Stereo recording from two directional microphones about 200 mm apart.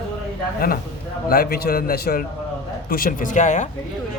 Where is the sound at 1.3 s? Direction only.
50° left (ahead or behind).